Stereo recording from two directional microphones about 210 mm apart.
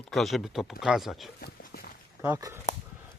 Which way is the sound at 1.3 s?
50° left (ahead or behind).